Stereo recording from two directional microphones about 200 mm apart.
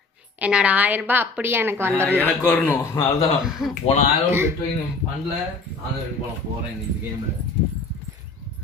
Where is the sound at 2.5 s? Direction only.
10° left (ahead or behind).